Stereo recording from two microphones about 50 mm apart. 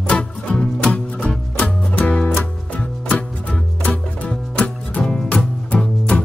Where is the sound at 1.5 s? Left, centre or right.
Left.